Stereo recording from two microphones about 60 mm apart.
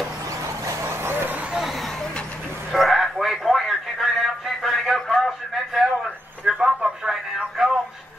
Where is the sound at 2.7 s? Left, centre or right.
Centre.